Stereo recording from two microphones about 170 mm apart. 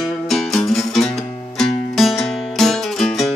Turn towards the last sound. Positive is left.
turn(degrees=0)  # may be behind; listen again after turning